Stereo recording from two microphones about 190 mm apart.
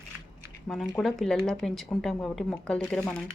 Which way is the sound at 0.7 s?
Centre (ahead or behind).